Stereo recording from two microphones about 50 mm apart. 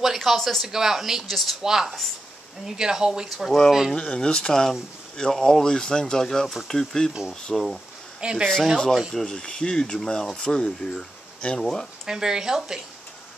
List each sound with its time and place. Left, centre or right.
0.0 s speech: centre
0.7 s speech: centre
1.6 s speech: centre
3.9 s speech: centre
8.2 s speech: right
9.1 s speech: centre
12.1 s speech: centre